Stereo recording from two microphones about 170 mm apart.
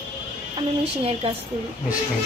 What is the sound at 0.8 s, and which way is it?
Speech, 35° right (ahead or behind).